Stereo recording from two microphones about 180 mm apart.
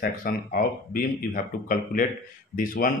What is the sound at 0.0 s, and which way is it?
Speech, 55° left (ahead or behind).